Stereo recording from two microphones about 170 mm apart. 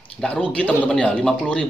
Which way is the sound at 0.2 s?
5° left (ahead or behind).